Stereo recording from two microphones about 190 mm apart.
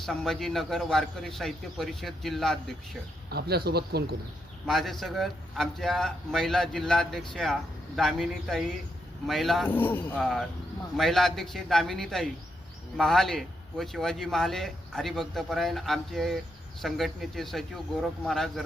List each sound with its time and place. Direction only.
0.0 s a man's voice: centre (ahead or behind)
3.2 s speech: 55° right (ahead or behind)
4.6 s a man's voice: centre (ahead or behind)